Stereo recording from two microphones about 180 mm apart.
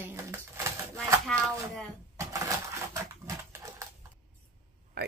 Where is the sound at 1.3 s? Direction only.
5° left (ahead or behind).